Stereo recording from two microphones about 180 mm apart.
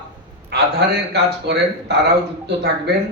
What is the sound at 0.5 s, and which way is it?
A man's voice, 65° right (ahead or behind).